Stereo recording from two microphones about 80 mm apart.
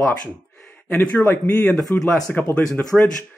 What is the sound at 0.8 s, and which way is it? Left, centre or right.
Speech, centre.